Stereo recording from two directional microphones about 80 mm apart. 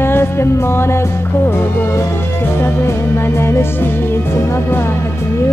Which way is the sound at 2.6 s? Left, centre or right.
Left.